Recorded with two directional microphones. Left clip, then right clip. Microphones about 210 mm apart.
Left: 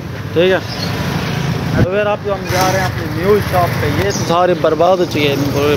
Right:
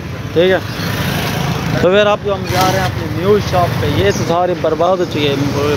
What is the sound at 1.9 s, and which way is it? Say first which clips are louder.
Speech: right 6 dB; 35° right (ahead or behind).